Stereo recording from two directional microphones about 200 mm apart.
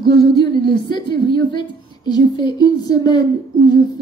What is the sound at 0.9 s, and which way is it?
A woman's voice, 25° left (ahead or behind).